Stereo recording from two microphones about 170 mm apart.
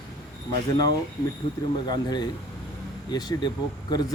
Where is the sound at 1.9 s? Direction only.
25° left (ahead or behind).